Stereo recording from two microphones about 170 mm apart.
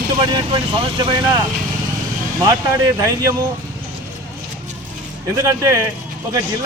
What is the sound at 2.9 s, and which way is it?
Speech, 20° right (ahead or behind).